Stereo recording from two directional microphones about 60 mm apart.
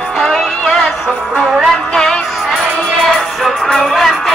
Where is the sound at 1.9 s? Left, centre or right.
Centre.